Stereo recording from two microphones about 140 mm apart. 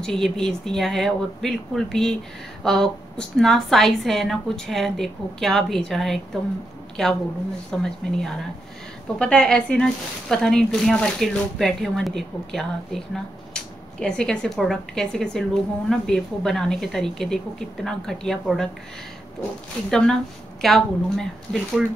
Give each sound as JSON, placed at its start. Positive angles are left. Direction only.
{"t": 0.0, "sound": "speech", "side_deg": 5}
{"t": 19.9, "sound": "speech", "side_deg": 5}